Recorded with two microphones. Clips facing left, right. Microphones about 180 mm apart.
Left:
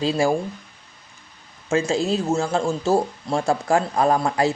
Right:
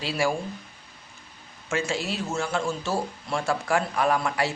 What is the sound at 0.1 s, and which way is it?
Speech, 25° left (ahead or behind).